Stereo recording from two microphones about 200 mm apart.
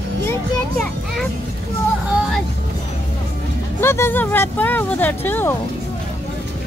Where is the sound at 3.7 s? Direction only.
10° left (ahead or behind).